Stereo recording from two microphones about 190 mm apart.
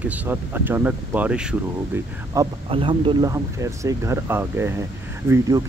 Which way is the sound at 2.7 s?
30° right (ahead or behind).